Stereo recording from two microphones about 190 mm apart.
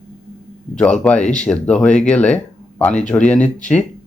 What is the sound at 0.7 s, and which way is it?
Speech, 5° left (ahead or behind).